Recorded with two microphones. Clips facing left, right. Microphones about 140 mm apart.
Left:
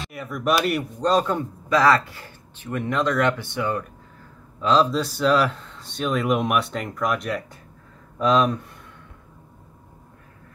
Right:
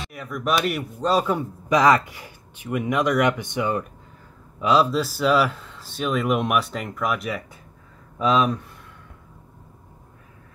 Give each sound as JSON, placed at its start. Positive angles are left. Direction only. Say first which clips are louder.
{"t": 0.0, "sound": "speech", "louder": "left 2 dB", "side_deg": 0}
{"t": 1.7, "sound": "speech", "louder": "right 1 dB", "side_deg": -15}
{"t": 4.6, "sound": "speech", "louder": "even", "side_deg": -10}